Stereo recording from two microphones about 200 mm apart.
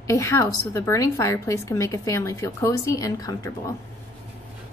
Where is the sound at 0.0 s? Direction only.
15° left (ahead or behind).